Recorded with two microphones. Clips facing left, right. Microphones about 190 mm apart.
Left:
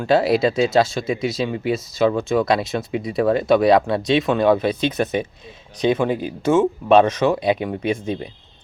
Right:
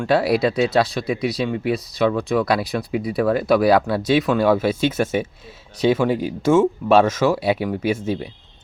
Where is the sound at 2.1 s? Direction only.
25° left (ahead or behind).